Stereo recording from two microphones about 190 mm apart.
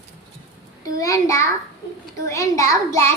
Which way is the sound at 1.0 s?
15° left (ahead or behind).